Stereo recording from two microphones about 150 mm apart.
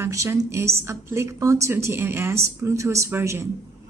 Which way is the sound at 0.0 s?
20° right (ahead or behind).